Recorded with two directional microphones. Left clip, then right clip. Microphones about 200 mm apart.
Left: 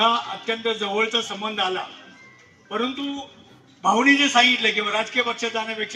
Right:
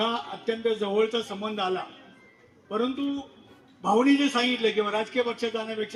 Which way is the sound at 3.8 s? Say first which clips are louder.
Left 5 dB; 25° left (ahead or behind).